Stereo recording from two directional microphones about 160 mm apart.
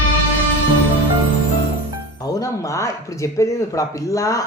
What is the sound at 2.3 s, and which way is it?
Speech, 20° left (ahead or behind).